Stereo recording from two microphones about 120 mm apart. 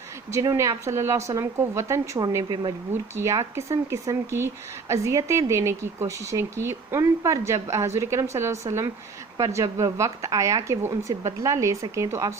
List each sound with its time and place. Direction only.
0.3 s speech: 25° right (ahead or behind)
2.2 s speech: 35° right (ahead or behind)
3.2 s speech: 25° right (ahead or behind)